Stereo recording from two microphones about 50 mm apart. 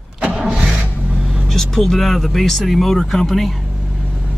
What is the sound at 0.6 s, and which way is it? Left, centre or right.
Vehicle, right.